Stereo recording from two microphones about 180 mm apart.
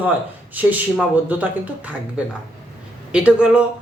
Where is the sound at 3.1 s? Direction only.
5° right (ahead or behind).